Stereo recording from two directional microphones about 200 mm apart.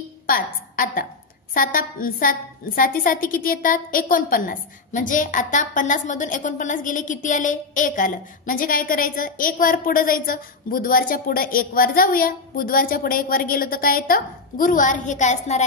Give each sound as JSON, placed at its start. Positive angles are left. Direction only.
{"t": 0.3, "sound": "a woman's voice", "side_deg": 45}